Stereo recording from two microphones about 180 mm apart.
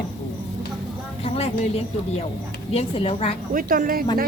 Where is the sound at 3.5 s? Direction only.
50° right (ahead or behind).